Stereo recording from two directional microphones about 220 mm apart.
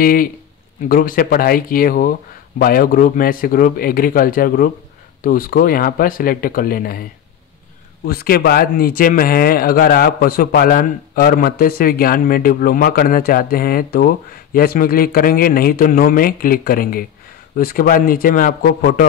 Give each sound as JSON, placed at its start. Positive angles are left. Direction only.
{"t": 0.0, "sound": "speech", "side_deg": 40}